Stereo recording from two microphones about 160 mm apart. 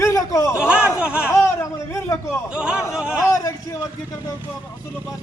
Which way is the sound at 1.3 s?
20° left (ahead or behind).